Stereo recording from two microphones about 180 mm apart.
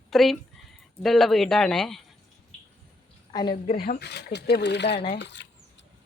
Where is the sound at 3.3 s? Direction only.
25° left (ahead or behind).